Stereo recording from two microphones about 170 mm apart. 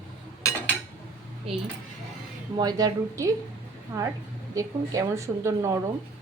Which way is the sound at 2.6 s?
20° right (ahead or behind).